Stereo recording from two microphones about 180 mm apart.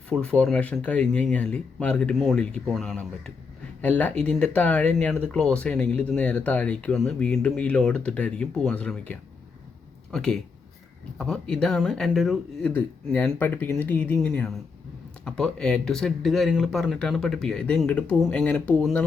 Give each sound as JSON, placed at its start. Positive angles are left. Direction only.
{"t": 0.1, "sound": "speech", "side_deg": 5}